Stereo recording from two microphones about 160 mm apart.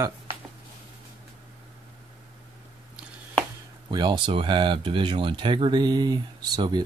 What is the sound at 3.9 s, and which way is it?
Speech, 25° right (ahead or behind).